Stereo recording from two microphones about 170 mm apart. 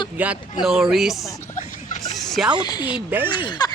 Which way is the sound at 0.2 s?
10° right (ahead or behind).